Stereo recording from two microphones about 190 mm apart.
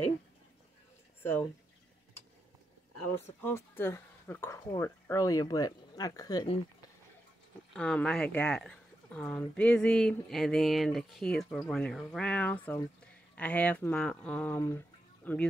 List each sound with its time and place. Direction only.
3.3 s speech: 10° left (ahead or behind)
7.7 s speech: 5° left (ahead or behind)